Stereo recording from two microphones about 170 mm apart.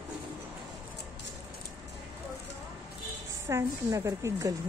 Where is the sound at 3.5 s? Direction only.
15° right (ahead or behind).